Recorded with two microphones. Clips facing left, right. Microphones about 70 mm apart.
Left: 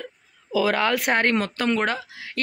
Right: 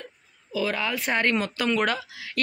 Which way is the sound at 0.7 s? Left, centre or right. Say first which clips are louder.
Left 6 dB; left.